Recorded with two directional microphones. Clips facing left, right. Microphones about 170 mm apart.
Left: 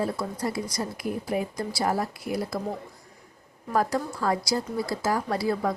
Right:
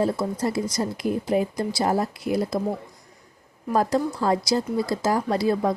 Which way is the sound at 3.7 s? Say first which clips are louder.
Right 4 dB; 20° right (ahead or behind).